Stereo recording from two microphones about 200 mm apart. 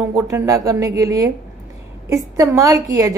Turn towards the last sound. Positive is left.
turn(degrees=-15)  # may be behind; listen again after turning